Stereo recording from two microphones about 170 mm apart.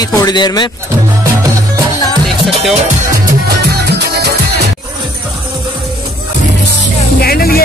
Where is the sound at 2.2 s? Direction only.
Centre (ahead or behind).